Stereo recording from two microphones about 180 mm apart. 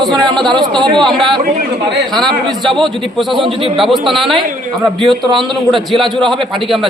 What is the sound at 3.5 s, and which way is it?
Speech, 30° right (ahead or behind).